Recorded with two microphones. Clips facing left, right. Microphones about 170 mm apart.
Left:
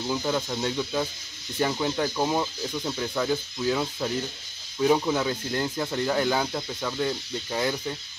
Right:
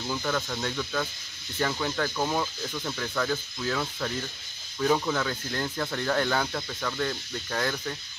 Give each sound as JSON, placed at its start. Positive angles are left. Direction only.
{"t": 0.0, "sound": "speech", "side_deg": 15}